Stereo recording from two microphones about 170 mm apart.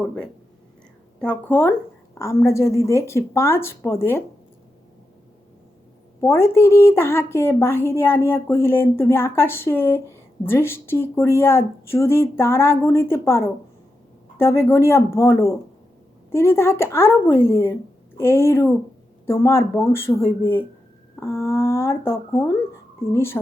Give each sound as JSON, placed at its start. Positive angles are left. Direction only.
{"t": 1.2, "sound": "a woman's voice", "side_deg": 10}
{"t": 6.1, "sound": "a woman's voice", "side_deg": 15}